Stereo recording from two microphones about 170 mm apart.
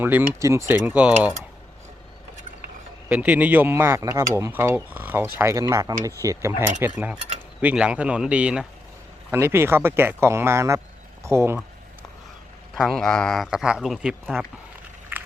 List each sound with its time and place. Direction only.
0.0 s speech: 10° right (ahead or behind)
3.1 s speech: 10° right (ahead or behind)
6.8 s speech: 10° right (ahead or behind)
12.7 s speech: centre (ahead or behind)